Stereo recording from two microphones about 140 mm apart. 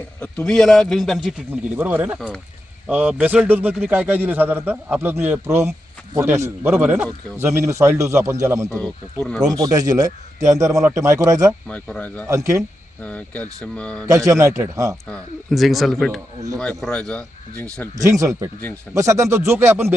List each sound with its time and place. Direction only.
0.2 s speech: 5° left (ahead or behind)
1.7 s a man's voice: 15° right (ahead or behind)
2.1 s a man's voice: centre (ahead or behind); by 8.7 s 20° right (ahead or behind)
8.7 s speech: 5° left (ahead or behind)
9.5 s a man's voice: 25° right (ahead or behind)
11.7 s speech: 10° left (ahead or behind)
12.3 s a man's voice: 20° right (ahead or behind)
13.0 s speech: 10° left (ahead or behind)
14.1 s a man's voice: 25° right (ahead or behind)
15.0 s speech: 5° left (ahead or behind)
17.9 s a man's voice: 25° right (ahead or behind)